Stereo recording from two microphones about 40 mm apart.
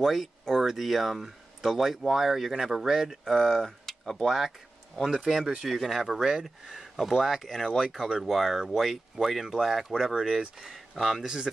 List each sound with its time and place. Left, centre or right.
0.0 s speech: centre
3.3 s speech: centre
4.2 s speech: centre
7.6 s speech: centre
8.0 s speech: centre